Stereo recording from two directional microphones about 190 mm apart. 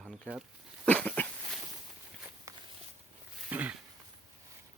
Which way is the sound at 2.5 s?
15° right (ahead or behind).